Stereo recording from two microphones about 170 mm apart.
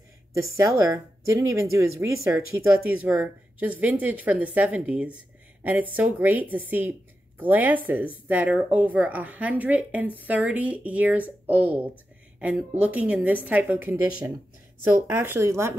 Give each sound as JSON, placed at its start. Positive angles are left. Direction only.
{"t": 0.3, "sound": "speech", "side_deg": -20}